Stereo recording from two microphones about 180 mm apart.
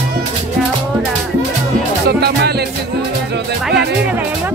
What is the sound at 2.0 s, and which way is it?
Music, 65° right (ahead or behind).